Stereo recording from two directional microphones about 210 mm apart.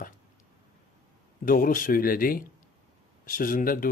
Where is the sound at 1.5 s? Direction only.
40° left (ahead or behind).